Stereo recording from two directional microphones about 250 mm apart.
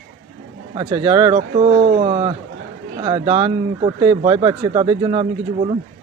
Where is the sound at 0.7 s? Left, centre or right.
Right.